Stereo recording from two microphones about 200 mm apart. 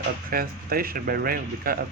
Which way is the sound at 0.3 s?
50° right (ahead or behind).